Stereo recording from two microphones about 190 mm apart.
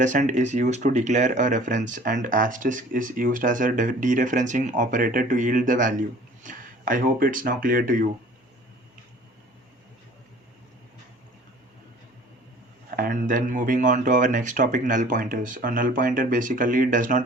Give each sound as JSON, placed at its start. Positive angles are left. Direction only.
{"t": 0.0, "sound": "speech", "side_deg": -40}
{"t": 13.0, "sound": "speech", "side_deg": -45}